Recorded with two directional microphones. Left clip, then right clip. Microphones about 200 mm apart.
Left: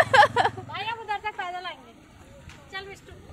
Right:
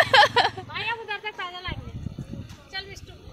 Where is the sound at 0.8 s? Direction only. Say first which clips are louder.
Right 1 dB; 45° left (ahead or behind).